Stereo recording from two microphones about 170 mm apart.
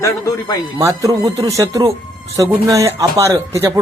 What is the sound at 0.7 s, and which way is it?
Speech, 20° right (ahead or behind).